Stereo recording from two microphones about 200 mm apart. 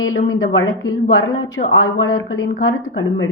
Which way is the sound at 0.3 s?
80° left.